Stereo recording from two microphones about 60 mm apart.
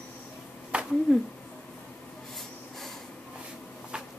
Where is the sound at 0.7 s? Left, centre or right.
Centre.